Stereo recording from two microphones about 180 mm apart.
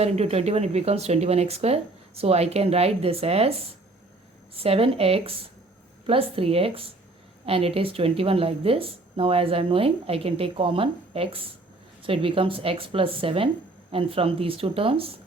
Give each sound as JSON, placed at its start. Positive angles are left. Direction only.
{"t": 0.0, "sound": "speech", "side_deg": -35}
{"t": 4.6, "sound": "speech", "side_deg": -30}